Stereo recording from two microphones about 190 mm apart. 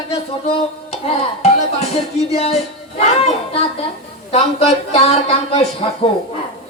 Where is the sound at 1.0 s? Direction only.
35° left (ahead or behind).